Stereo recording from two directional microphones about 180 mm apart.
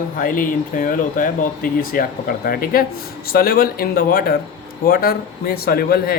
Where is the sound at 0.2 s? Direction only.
50° left (ahead or behind).